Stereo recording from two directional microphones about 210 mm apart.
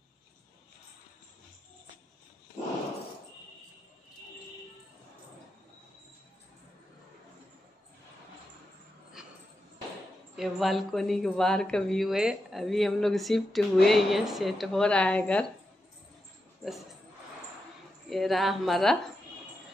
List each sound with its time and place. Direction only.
10.3 s speech: centre (ahead or behind)
16.6 s a sound: centre (ahead or behind)
18.1 s speech: centre (ahead or behind)